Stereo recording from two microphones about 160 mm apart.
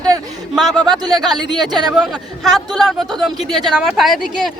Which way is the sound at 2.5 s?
Centre (ahead or behind).